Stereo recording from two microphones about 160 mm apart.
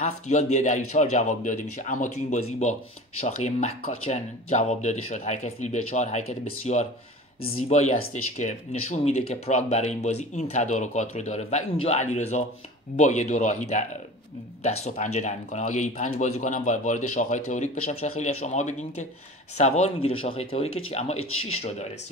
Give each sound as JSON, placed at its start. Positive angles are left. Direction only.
{"t": 0.0, "sound": "speech", "side_deg": 45}